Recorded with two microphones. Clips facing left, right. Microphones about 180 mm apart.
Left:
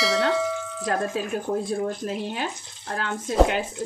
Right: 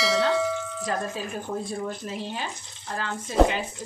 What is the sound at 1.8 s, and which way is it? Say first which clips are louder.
Speech: left 4 dB; 55° left (ahead or behind).